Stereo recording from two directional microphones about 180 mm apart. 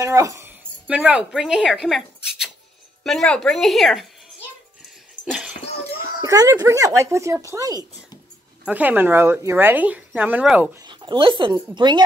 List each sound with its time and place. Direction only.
0.0 s a woman's voice: 20° right (ahead or behind)
0.8 s speech: 5° right (ahead or behind)
5.2 s a sound: 5° right (ahead or behind)
6.2 s a woman's voice: 20° right (ahead or behind)
10.9 s speech: 25° right (ahead or behind)